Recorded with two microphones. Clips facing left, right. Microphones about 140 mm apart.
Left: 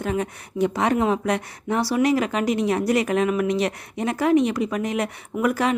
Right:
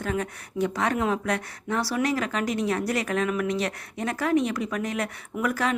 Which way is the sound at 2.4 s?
40° right (ahead or behind).